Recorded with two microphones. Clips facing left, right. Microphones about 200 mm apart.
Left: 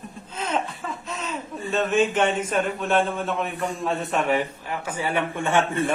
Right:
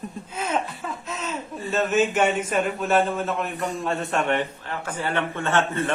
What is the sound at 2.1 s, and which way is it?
A man's voice, 10° right (ahead or behind).